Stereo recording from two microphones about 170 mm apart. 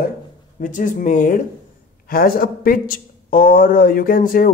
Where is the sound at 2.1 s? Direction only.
60° left (ahead or behind).